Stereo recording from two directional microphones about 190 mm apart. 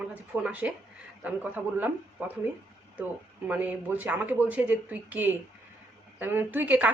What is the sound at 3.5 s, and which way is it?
Speech, 10° right (ahead or behind).